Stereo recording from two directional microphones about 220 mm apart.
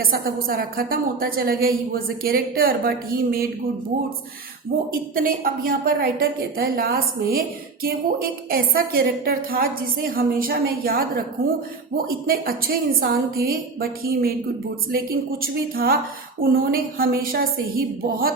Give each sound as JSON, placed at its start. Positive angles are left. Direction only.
{"t": 0.0, "sound": "a woman's voice", "side_deg": -40}
{"t": 4.9, "sound": "a woman's voice", "side_deg": -40}
{"t": 12.0, "sound": "a woman's voice", "side_deg": -40}